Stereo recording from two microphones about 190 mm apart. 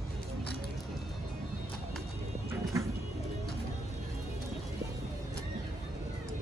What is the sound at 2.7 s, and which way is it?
Music, 15° right (ahead or behind).